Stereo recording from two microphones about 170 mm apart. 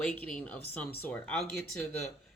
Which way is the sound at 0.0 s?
5° left (ahead or behind).